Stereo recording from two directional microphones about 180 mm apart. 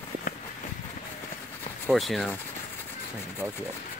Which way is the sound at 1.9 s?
Centre (ahead or behind).